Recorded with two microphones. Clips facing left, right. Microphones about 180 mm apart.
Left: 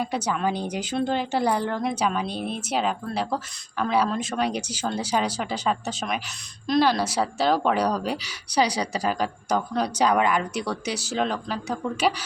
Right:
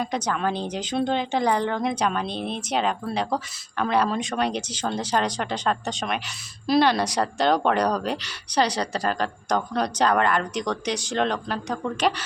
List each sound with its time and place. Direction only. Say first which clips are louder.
0.0 s speech: even; 5° left (ahead or behind)